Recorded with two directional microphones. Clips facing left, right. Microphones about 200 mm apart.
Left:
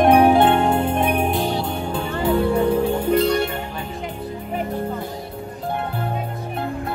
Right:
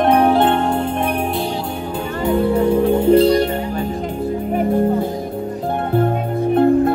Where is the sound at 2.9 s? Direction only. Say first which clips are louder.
Right 6 dB; 25° right (ahead or behind); by 4.6 s 45° right (ahead or behind).